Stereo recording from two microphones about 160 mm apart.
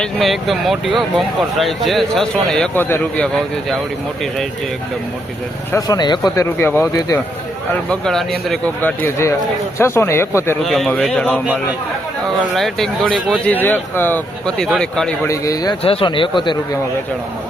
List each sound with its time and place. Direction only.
0.0 s speech: centre (ahead or behind)
5.7 s speech: 25° left (ahead or behind)
10.6 s speech: centre (ahead or behind)
12.5 s speech: centre (ahead or behind)
13.5 s speech: 10° left (ahead or behind)
15.3 s speech: 20° left (ahead or behind)
15.8 s speech: 35° left (ahead or behind)